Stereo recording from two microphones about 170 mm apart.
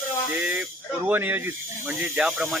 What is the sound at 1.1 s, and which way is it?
Speech, 10° right (ahead or behind).